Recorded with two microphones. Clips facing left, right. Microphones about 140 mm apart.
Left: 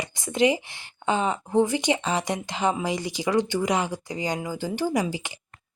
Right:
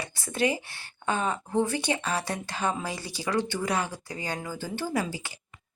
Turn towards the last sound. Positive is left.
turn(degrees=20)  # may be behind; listen again after turning